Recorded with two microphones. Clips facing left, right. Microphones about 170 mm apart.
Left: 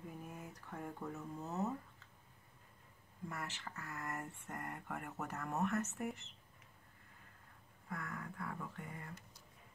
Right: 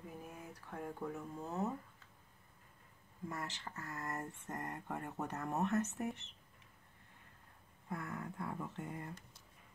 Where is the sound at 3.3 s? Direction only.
20° right (ahead or behind).